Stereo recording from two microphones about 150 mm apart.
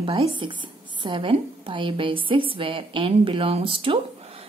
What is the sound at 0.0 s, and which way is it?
A woman's voice, 35° right (ahead or behind).